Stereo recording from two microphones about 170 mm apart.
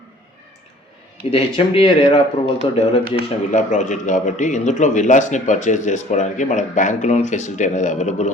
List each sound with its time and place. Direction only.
1.3 s a man's voice: 35° left (ahead or behind)